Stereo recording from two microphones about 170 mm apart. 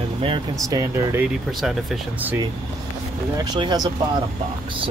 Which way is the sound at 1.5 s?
Centre (ahead or behind).